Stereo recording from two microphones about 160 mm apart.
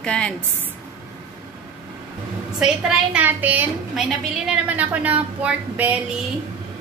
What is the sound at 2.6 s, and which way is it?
A woman's voice, 5° right (ahead or behind).